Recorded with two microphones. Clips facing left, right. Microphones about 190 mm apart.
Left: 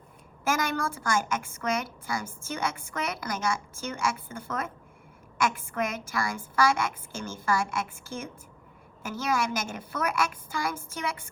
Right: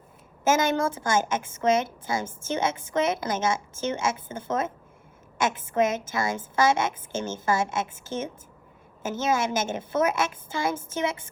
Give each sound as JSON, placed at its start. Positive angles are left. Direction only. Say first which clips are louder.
{"t": 0.4, "sound": "a woman's voice", "louder": "right 6 dB", "side_deg": -25}